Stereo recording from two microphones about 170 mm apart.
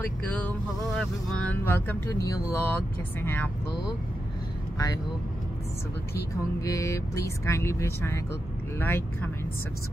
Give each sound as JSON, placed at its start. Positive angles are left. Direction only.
{"t": 0.0, "sound": "speech", "side_deg": 10}
{"t": 6.6, "sound": "speech", "side_deg": 20}